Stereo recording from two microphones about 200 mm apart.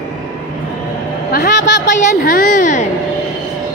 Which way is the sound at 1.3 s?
50° left (ahead or behind).